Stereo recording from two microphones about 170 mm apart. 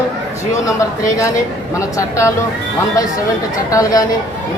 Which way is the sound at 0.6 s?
20° left (ahead or behind).